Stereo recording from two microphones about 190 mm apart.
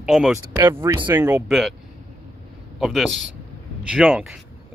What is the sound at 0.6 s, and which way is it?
Speech, 15° right (ahead or behind).